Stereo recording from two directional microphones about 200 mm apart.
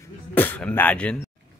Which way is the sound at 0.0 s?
10° left (ahead or behind).